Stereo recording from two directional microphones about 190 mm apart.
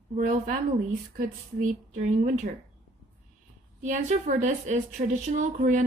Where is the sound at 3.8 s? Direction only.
40° right (ahead or behind).